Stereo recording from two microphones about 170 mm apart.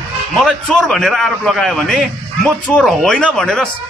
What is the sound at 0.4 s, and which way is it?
A man's voice, 5° left (ahead or behind).